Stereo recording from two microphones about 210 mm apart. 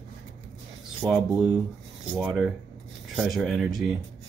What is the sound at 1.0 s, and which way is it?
Speech, 15° right (ahead or behind).